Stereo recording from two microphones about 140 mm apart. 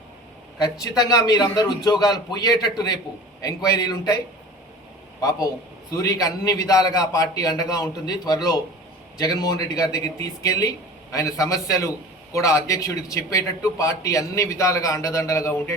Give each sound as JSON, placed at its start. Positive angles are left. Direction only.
{"t": 0.6, "sound": "a man's voice", "side_deg": 25}
{"t": 5.9, "sound": "a man's voice", "side_deg": 25}